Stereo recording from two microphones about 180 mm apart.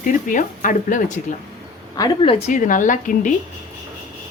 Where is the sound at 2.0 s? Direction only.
25° left (ahead or behind).